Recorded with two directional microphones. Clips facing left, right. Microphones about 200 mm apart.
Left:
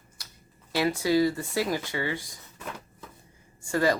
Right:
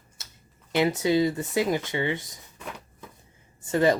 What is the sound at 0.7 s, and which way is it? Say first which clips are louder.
Speech: right 1 dB; 20° right (ahead or behind).